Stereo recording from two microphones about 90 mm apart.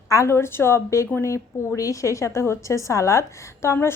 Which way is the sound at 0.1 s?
30° left (ahead or behind).